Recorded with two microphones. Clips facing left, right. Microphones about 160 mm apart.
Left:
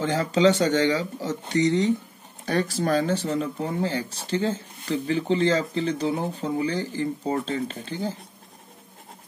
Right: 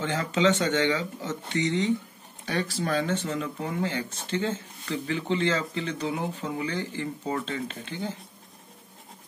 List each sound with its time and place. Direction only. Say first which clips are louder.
0.0 s speech: left 4 dB; 35° left (ahead or behind)